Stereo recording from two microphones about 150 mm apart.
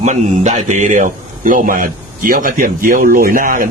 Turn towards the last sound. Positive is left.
turn(degrees=-65)  # may be behind; listen again after turning